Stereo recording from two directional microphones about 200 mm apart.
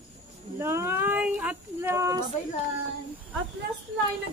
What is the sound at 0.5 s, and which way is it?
Speech, 10° right (ahead or behind).